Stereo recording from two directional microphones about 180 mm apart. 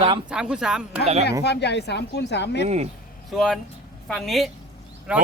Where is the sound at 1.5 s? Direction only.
70° left (ahead or behind).